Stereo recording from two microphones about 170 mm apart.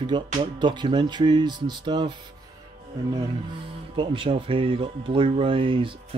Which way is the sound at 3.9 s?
30° right (ahead or behind).